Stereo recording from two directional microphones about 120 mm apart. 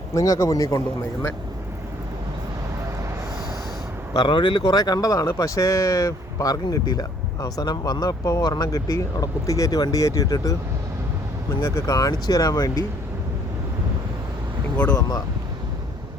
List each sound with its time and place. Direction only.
0.1 s speech: 25° left (ahead or behind)
4.1 s speech: 40° left (ahead or behind)
11.6 s speech: 30° left (ahead or behind)